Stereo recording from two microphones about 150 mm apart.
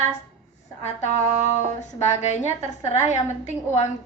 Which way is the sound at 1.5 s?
50° left (ahead or behind).